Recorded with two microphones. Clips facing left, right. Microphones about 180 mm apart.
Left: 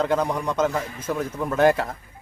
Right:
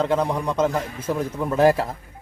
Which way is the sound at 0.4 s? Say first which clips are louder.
Right 1 dB; 30° right (ahead or behind).